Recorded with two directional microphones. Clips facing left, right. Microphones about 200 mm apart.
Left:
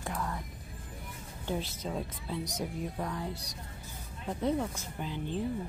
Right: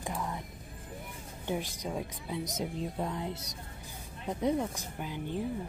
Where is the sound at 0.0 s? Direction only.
15° right (ahead or behind).